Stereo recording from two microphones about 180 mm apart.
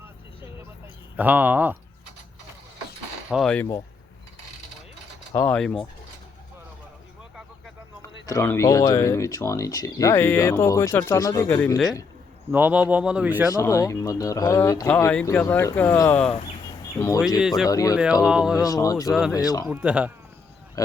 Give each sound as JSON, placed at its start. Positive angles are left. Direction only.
{"t": 1.1, "sound": "speech", "side_deg": -10}
{"t": 3.2, "sound": "speech", "side_deg": 0}
{"t": 5.3, "sound": "speech", "side_deg": 10}
{"t": 8.3, "sound": "speech", "side_deg": 15}
{"t": 12.5, "sound": "speech", "side_deg": -10}
{"t": 13.5, "sound": "speech", "side_deg": 20}
{"t": 16.6, "sound": "a sound", "side_deg": 15}
{"t": 17.4, "sound": "speech", "side_deg": -5}
{"t": 17.7, "sound": "speech", "side_deg": 20}
{"t": 17.9, "sound": "speech", "side_deg": -5}
{"t": 18.5, "sound": "speech", "side_deg": 20}
{"t": 19.6, "sound": "speech", "side_deg": -5}
{"t": 20.8, "sound": "speech", "side_deg": 20}